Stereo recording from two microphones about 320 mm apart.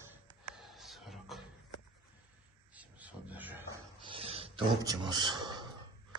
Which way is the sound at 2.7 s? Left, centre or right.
Centre.